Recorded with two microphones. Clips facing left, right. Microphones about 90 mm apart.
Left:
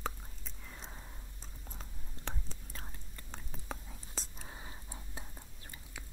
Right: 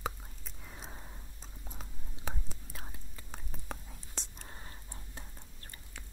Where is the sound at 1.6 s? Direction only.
5° right (ahead or behind).